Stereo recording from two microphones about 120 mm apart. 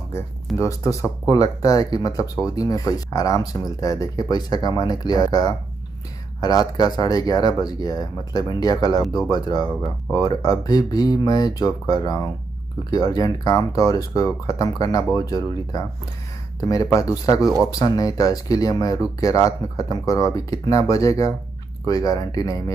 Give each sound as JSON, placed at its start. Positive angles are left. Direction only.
{"t": 0.6, "sound": "speech", "side_deg": 25}